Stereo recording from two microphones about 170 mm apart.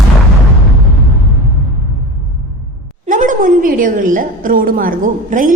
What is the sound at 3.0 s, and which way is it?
A woman's voice, 50° right (ahead or behind).